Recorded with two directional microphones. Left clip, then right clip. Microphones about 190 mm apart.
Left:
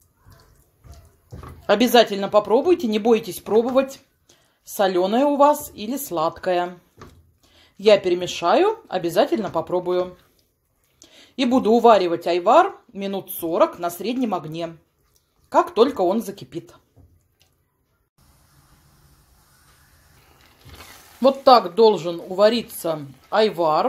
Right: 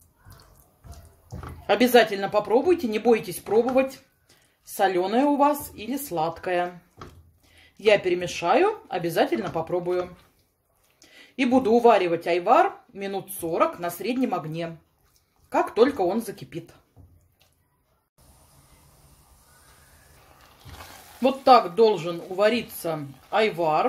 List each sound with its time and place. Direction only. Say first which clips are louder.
1.7 s speech: left 3 dB; 30° left (ahead or behind)
4.7 s speech: left 3 dB; 30° left (ahead or behind)
7.8 s speech: left 4 dB; 30° left (ahead or behind)
11.1 s speech: left 2 dB; 30° left (ahead or behind)
15.5 s speech: left 4 dB; 30° left (ahead or behind)
21.2 s speech: left 3 dB; 35° left (ahead or behind)